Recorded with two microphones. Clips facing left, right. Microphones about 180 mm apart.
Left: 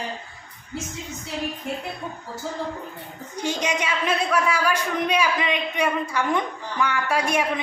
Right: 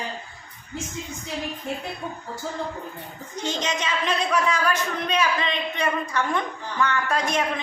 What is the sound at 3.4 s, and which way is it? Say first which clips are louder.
A man's voice: left 2 dB; 10° left (ahead or behind).